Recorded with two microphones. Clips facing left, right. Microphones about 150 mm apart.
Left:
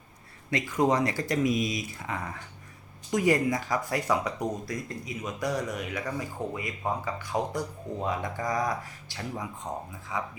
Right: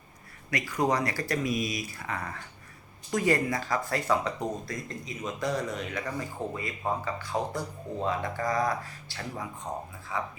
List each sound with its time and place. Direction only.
0.5 s speech: 20° left (ahead or behind)